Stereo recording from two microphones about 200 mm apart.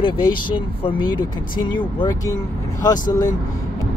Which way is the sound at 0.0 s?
25° left (ahead or behind).